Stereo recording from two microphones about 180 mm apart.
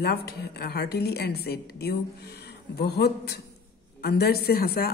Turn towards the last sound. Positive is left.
turn(degrees=60)  # may be behind; listen again after turning